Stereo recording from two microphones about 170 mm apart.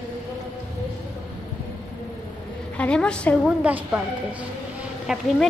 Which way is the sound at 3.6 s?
10° right (ahead or behind).